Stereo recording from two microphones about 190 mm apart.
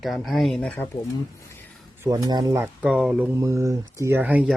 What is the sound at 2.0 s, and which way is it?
Speech, 20° right (ahead or behind).